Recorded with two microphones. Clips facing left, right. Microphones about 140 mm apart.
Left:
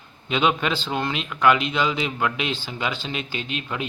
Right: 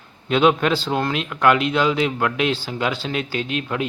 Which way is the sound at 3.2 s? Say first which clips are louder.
Right 6 dB; 55° right (ahead or behind).